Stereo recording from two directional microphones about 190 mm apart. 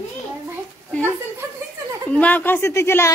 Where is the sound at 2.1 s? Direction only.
5° left (ahead or behind).